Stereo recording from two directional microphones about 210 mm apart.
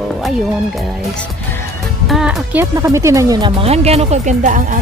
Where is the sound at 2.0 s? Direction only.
Centre (ahead or behind); by 4.8 s 40° right (ahead or behind).